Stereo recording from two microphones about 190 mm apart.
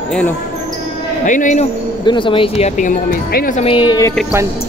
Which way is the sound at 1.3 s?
40° left (ahead or behind).